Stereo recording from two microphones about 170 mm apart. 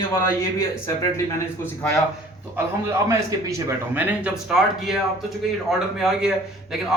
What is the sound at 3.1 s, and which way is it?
A man's voice, 20° right (ahead or behind).